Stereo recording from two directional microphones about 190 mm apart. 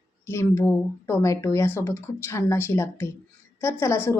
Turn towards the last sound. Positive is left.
turn(degrees=15)  # may be behind; listen again after turning